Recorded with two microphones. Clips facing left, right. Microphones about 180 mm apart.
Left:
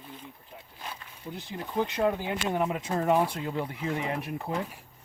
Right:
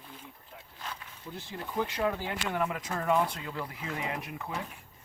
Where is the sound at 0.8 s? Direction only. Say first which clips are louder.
Even; 15° left (ahead or behind); by 4.5 s 35° left (ahead or behind).